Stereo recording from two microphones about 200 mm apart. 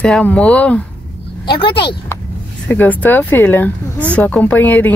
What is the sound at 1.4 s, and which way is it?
Speech, 25° left (ahead or behind).